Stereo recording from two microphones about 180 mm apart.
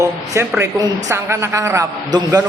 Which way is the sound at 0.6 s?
15° right (ahead or behind).